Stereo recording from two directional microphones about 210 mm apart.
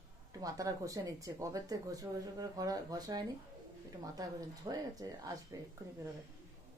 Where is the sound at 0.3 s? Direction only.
15° right (ahead or behind).